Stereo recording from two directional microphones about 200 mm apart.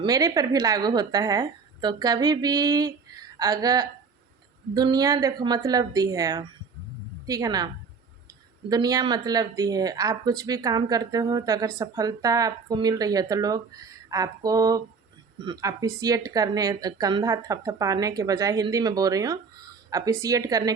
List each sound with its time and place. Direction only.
0.0 s speech: 15° right (ahead or behind)
8.7 s speech: 20° right (ahead or behind)